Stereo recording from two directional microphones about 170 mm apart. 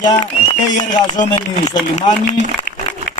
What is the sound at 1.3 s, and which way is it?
Speech, 25° left (ahead or behind).